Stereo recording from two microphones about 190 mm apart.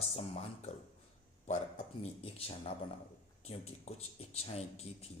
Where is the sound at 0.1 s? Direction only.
35° left (ahead or behind).